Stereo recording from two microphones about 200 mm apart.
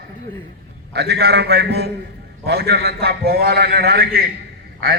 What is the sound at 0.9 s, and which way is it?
A man's voice, 55° right (ahead or behind).